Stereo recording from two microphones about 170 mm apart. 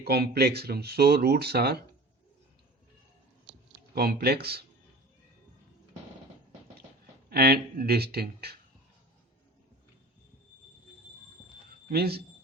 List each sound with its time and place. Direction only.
0.0 s speech: 70° right (ahead or behind)
3.9 s speech: 65° right (ahead or behind)
7.3 s speech: 65° right (ahead or behind)
11.9 s speech: 65° right (ahead or behind)